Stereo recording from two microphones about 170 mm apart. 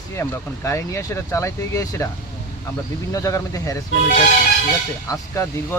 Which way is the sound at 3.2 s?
20° left (ahead or behind).